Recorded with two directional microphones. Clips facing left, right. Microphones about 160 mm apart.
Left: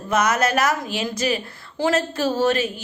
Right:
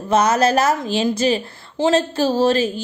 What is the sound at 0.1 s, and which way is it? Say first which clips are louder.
A woman's voice: right 4 dB; 30° right (ahead or behind).